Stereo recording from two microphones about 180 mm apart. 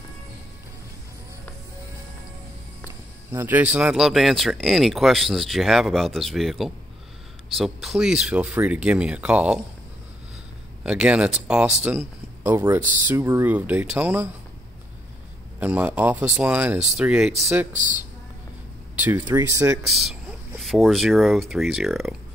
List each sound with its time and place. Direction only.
3.3 s speech: 10° right (ahead or behind)
10.8 s speech: 5° right (ahead or behind)
15.6 s speech: 10° right (ahead or behind)
18.9 s speech: 10° right (ahead or behind)
19.9 s speech: centre (ahead or behind)